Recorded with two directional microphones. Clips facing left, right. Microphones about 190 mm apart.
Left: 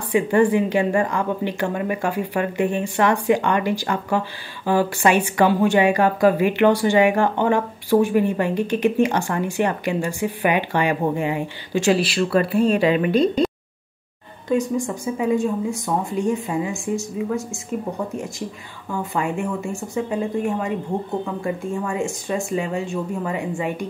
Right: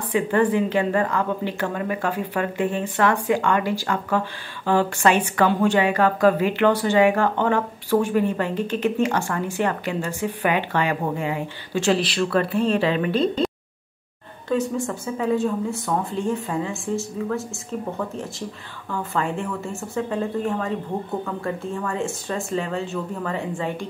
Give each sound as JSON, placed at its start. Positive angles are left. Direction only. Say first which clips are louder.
{"t": 0.1, "sound": "a woman's voice", "louder": "left 3 dB", "side_deg": 15}
{"t": 14.5, "sound": "a woman's voice", "louder": "left 2 dB", "side_deg": 10}